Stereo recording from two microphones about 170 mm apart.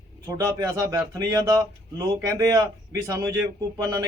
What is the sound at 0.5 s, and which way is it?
A man's voice, 20° right (ahead or behind).